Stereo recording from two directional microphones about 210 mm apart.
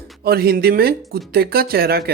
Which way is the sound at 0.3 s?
45° right (ahead or behind).